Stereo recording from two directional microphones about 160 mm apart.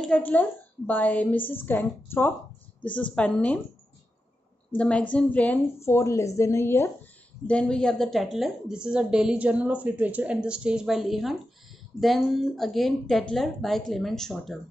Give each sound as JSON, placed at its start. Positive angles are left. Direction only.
{"t": 0.0, "sound": "a woman's voice", "side_deg": 10}
{"t": 4.7, "sound": "a woman's voice", "side_deg": 5}